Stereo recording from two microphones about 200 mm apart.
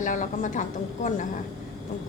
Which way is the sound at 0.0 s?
40° left (ahead or behind).